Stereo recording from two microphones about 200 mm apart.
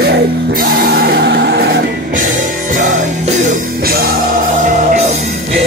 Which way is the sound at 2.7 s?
40° right (ahead or behind).